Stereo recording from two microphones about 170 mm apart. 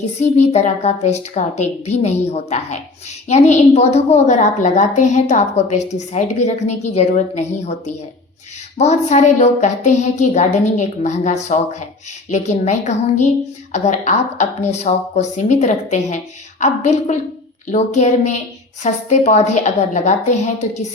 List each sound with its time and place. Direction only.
0.2 s a woman's voice: 45° left (ahead or behind)